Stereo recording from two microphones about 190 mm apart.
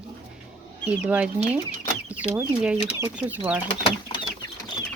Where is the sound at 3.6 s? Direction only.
25° left (ahead or behind).